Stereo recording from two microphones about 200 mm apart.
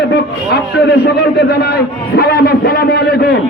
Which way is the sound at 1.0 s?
50° left (ahead or behind).